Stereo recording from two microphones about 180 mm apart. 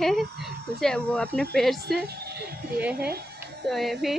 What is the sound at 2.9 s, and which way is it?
Speech, 60° right (ahead or behind).